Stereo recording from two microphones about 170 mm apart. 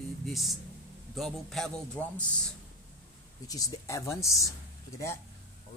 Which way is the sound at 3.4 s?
20° left (ahead or behind).